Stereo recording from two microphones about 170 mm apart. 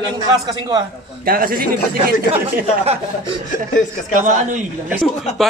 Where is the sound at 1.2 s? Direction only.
60° right (ahead or behind).